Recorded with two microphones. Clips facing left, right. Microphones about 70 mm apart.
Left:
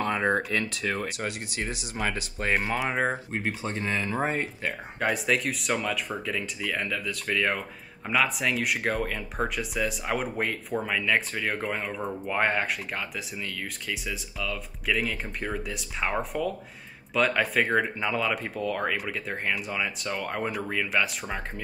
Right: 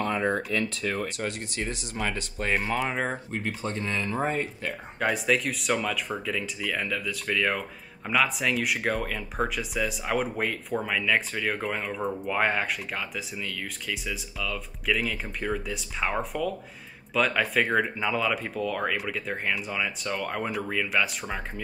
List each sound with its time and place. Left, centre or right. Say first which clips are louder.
1.0 s speech: right 1 dB; centre
3.3 s speech: left 1 dB; left
3.8 s speech: left 1 dB; centre
5.0 s speech: right 1 dB; centre